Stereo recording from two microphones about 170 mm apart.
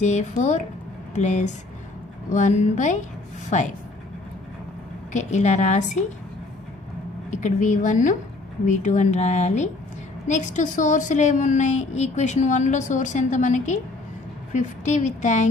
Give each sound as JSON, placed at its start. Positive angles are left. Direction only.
{"t": 0.0, "sound": "a woman's voice", "side_deg": 45}
{"t": 5.1, "sound": "a woman's voice", "side_deg": 45}
{"t": 7.2, "sound": "a woman's voice", "side_deg": 45}